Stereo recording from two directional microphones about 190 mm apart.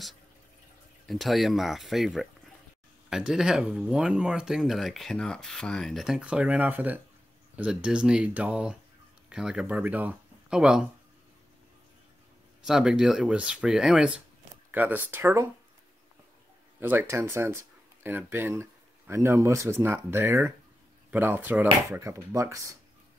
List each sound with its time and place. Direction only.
1.0 s speech: centre (ahead or behind)
12.6 s speech: 5° right (ahead or behind)
16.8 s speech: 10° right (ahead or behind)